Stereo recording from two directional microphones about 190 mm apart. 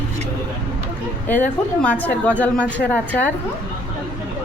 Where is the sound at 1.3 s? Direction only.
10° left (ahead or behind).